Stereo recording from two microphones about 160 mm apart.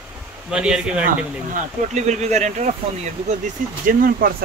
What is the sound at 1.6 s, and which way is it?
Speech, 45° right (ahead or behind).